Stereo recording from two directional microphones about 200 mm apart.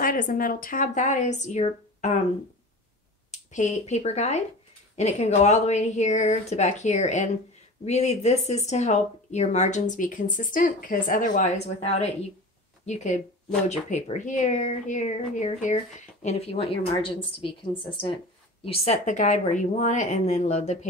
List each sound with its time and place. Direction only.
0.0 s speech: 45° left (ahead or behind)
3.3 s speech: 35° left (ahead or behind)
18.7 s speech: 35° left (ahead or behind)